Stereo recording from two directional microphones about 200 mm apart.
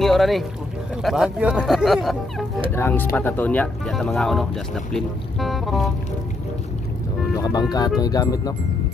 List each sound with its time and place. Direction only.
0.0 s a sound: centre (ahead or behind)
1.0 s speech: centre (ahead or behind)
7.3 s speech: 20° left (ahead or behind)